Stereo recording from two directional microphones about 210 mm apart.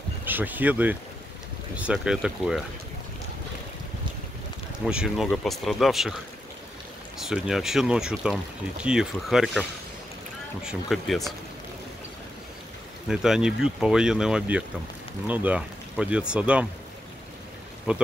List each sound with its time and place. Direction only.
0.2 s speech: 10° right (ahead or behind)
4.8 s speech: 5° right (ahead or behind)
7.2 s speech: centre (ahead or behind)
13.1 s speech: centre (ahead or behind)
17.9 s speech: 5° right (ahead or behind)